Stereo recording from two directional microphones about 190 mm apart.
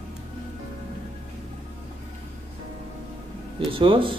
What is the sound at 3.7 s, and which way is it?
Speech, 25° right (ahead or behind).